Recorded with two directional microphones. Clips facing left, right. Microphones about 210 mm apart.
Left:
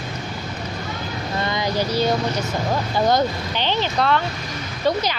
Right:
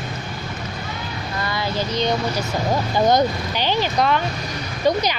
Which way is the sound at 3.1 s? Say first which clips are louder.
Right 2 dB; 15° right (ahead or behind).